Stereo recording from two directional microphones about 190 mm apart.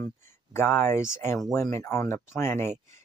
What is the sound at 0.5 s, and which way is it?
Speech, 10° left (ahead or behind).